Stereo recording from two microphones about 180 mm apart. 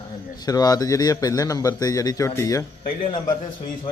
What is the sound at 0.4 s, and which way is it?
A man's voice, 20° left (ahead or behind).